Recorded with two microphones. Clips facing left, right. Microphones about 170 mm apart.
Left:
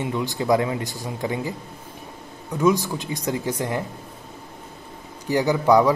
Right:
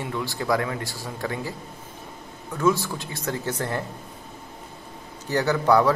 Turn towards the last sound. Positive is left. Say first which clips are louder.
# left 2 dB
turn(degrees=15)  # may be behind; listen again after turning